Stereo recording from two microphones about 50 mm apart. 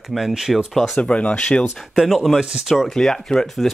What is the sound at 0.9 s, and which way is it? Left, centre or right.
Speech, left.